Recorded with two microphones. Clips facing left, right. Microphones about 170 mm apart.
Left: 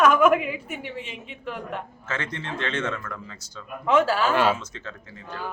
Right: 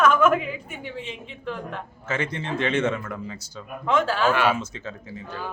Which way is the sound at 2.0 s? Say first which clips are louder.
Right 7 dB; 10° right (ahead or behind).